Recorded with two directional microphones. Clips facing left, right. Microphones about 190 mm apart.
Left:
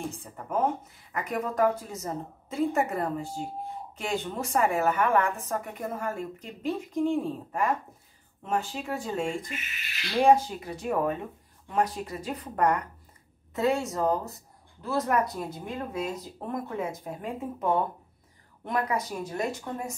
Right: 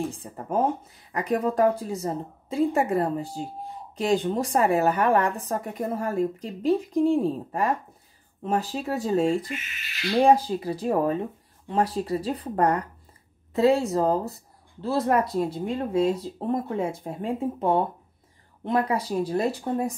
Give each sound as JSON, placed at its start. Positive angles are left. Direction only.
{"t": 0.2, "sound": "a woman's voice", "side_deg": -30}